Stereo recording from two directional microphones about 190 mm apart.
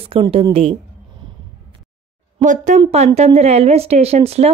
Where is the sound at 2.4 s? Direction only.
40° right (ahead or behind).